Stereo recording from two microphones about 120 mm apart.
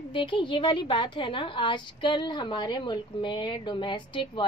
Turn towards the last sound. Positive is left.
turn(degrees=40)  # may be behind; listen again after turning